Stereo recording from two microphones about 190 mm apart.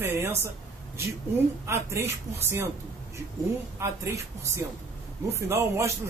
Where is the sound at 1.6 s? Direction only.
15° right (ahead or behind).